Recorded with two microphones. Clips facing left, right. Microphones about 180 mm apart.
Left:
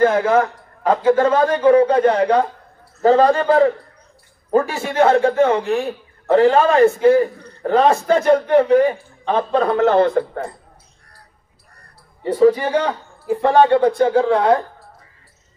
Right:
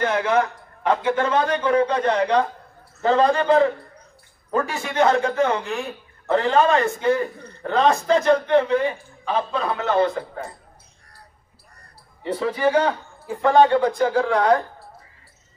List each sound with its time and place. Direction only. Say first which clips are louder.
0.0 s a man's voice: left 6 dB; 40° left (ahead or behind)
12.3 s a man's voice: left 7 dB; 40° left (ahead or behind)